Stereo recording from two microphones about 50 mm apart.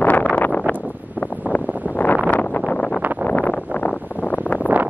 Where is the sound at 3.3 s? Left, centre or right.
Left.